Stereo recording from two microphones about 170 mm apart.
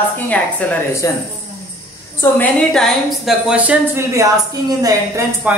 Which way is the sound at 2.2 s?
5° left (ahead or behind).